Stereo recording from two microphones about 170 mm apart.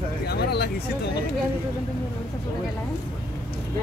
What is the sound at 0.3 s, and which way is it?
Vehicle, 70° left (ahead or behind).